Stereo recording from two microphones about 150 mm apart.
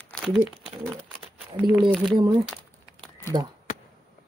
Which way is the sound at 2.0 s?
30° right (ahead or behind).